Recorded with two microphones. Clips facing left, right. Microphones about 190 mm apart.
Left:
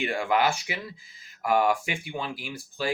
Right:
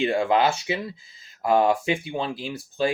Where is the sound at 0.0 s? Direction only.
25° right (ahead or behind).